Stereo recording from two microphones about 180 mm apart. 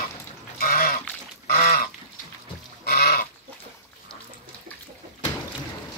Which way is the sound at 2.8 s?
60° left (ahead or behind).